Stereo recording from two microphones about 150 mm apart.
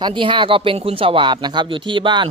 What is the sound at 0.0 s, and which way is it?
Speech, 35° right (ahead or behind).